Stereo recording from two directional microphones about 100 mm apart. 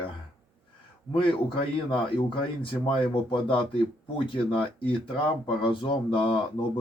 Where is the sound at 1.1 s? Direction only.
60° left (ahead or behind).